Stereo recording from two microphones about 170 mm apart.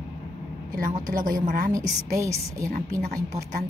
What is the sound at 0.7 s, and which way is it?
Speech, 50° right (ahead or behind).